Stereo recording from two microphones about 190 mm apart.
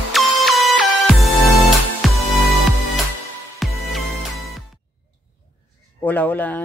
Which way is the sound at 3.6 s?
Centre (ahead or behind).